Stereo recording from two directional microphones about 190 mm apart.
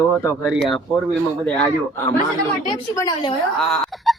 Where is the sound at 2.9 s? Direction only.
20° left (ahead or behind).